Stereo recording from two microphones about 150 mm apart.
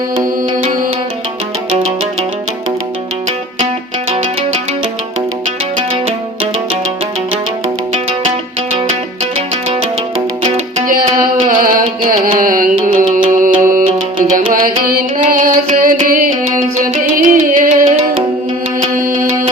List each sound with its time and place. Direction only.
10.4 s music: 50° right (ahead or behind)
11.4 s music: 65° right (ahead or behind)
17.8 s music: 45° right (ahead or behind)
18.8 s music: 65° right (ahead or behind)